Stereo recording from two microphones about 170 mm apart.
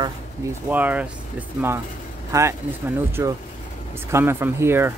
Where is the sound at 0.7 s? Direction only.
10° right (ahead or behind).